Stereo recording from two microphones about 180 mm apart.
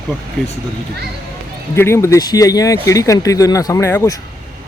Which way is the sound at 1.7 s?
15° left (ahead or behind).